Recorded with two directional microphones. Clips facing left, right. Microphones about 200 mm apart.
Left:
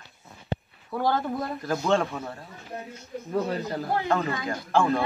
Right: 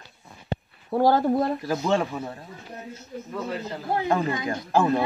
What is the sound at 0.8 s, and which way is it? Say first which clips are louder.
Speech: right 6 dB; 40° right (ahead or behind).